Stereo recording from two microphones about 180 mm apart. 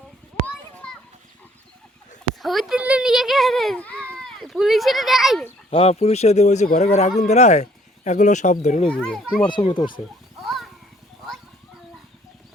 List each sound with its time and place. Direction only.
2.4 s a child's voice: centre (ahead or behind)
5.7 s speech: 35° left (ahead or behind)
8.9 s a child's voice: 5° left (ahead or behind)
9.5 s speech: 25° left (ahead or behind)
10.4 s horse: centre (ahead or behind)